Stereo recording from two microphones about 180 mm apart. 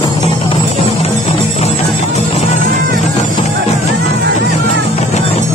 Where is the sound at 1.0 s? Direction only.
35° left (ahead or behind).